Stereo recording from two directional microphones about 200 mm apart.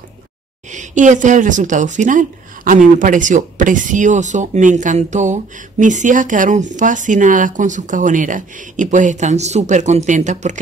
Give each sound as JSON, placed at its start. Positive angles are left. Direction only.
{"t": 0.7, "sound": "speech", "side_deg": -40}